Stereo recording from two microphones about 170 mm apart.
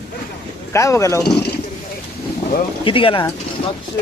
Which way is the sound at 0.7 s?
15° left (ahead or behind).